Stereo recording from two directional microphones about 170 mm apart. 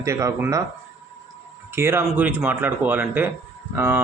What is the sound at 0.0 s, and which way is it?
Speech, 20° right (ahead or behind).